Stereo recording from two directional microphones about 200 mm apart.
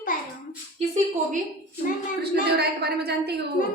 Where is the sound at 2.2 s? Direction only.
55° right (ahead or behind).